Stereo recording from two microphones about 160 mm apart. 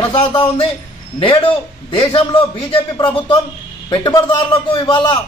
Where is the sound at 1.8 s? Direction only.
30° left (ahead or behind).